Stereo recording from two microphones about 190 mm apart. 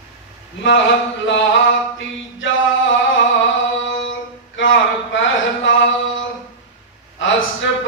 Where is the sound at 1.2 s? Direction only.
75° left (ahead or behind).